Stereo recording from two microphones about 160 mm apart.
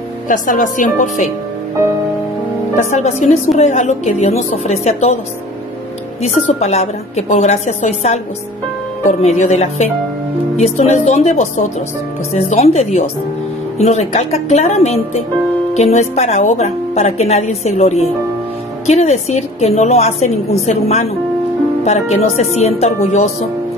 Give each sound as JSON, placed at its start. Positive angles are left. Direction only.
{"t": 0.3, "sound": "speech", "side_deg": 55}
{"t": 2.9, "sound": "speech", "side_deg": 45}
{"t": 6.2, "sound": "speech", "side_deg": 45}